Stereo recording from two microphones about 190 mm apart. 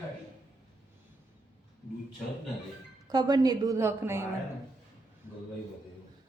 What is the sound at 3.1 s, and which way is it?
A woman's voice, 20° right (ahead or behind).